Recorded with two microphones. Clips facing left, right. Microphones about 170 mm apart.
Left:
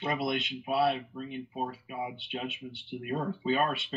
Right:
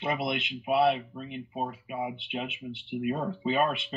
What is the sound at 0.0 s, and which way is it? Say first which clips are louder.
Speech: right 1 dB; 20° right (ahead or behind).